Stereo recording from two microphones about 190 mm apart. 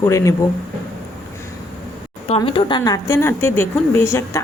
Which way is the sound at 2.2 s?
30° left (ahead or behind).